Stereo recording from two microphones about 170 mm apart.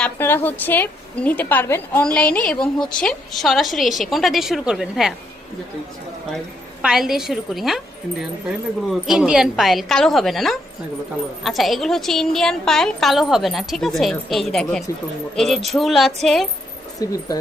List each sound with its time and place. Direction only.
0.0 s a woman's voice: 10° left (ahead or behind)
6.8 s a woman's voice: centre (ahead or behind)
8.9 s a woman's voice: centre (ahead or behind)
17.0 s speech: 20° left (ahead or behind)